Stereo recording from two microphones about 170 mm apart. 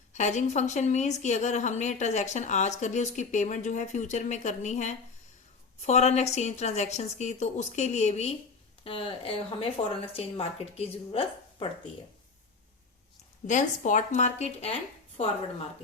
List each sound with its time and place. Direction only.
0.1 s a woman's voice: 45° left (ahead or behind)
13.5 s a woman's voice: 45° left (ahead or behind)